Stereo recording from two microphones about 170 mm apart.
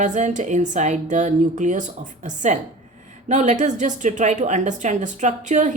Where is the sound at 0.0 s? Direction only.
45° right (ahead or behind).